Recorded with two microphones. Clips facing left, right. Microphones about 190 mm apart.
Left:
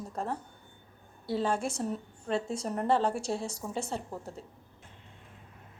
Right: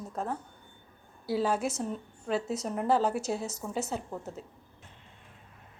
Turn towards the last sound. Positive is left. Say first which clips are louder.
# right 1 dB
turn(degrees=0)  # may be behind; listen again after turning